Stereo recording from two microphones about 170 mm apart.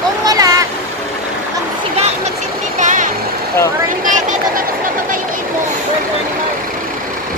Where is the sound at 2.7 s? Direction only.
50° right (ahead or behind).